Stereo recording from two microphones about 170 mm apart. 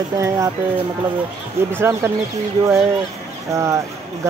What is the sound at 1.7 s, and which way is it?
Speech, 15° right (ahead or behind).